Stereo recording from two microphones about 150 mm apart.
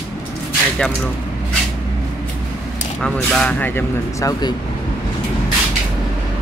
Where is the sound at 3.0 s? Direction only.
5° left (ahead or behind); by 4.5 s 25° left (ahead or behind).